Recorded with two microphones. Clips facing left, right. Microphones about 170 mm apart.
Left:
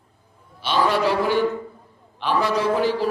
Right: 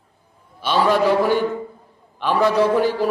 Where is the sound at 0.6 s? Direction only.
50° right (ahead or behind).